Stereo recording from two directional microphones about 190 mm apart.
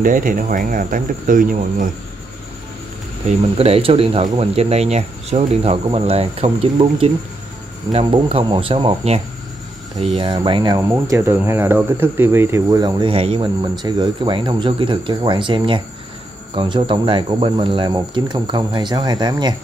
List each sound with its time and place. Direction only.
0.0 s speech: 45° right (ahead or behind)
3.3 s speech: 30° right (ahead or behind)